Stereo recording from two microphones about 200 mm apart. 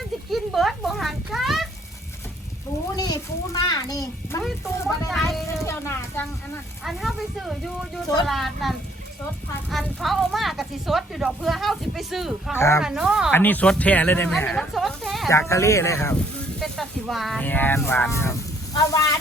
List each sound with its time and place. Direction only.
0.3 s a sound: centre (ahead or behind)
2.9 s a child's voice: 20° left (ahead or behind)
4.4 s speech: centre (ahead or behind)
5.6 s speech: 10° left (ahead or behind)
6.8 s speech: centre (ahead or behind)
12.5 s speech: 15° left (ahead or behind)
12.8 s speech: 5° right (ahead or behind)
13.3 s speech: 10° left (ahead or behind)
15.3 s speech: 15° left (ahead or behind)
16.6 s speech: centre (ahead or behind); by 19.0 s 15° left (ahead or behind)